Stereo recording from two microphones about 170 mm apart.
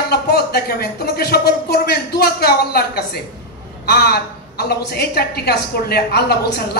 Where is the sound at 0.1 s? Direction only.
70° left (ahead or behind).